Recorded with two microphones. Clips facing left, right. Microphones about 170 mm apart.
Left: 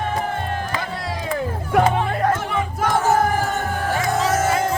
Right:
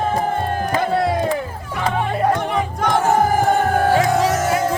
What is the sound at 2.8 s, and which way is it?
Music, 5° left (ahead or behind).